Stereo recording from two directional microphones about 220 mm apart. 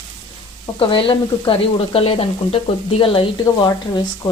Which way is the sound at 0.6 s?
25° left (ahead or behind).